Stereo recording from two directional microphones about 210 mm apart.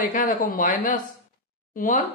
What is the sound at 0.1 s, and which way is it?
Speech, 40° left (ahead or behind).